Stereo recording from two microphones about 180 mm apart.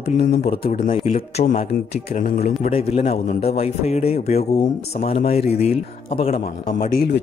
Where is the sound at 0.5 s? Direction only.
55° left (ahead or behind).